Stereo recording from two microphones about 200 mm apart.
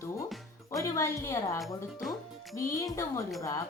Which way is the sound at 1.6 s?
Centre (ahead or behind).